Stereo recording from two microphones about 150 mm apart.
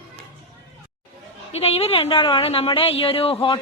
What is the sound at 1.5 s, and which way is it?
A woman's voice, 45° left (ahead or behind).